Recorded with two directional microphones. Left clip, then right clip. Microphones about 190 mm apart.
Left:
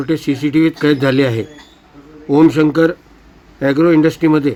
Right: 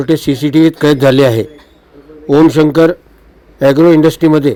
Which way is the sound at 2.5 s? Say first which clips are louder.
Right 4 dB; 25° right (ahead or behind).